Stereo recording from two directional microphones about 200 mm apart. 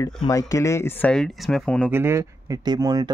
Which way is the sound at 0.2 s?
15° left (ahead or behind).